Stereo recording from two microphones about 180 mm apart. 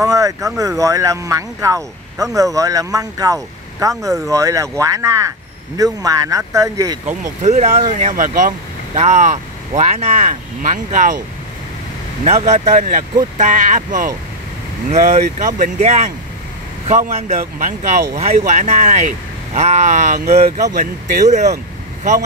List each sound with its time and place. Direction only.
0.0 s speech: 20° right (ahead or behind)
7.4 s speech: 40° right (ahead or behind)
12.5 s speech: 45° right (ahead or behind)